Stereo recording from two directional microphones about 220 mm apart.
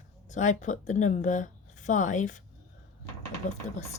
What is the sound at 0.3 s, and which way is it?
Speech, 35° left (ahead or behind).